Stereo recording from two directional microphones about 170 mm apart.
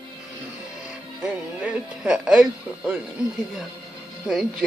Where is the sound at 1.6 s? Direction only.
5° right (ahead or behind).